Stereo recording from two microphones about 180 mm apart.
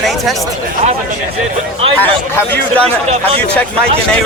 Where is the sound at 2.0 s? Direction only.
10° left (ahead or behind).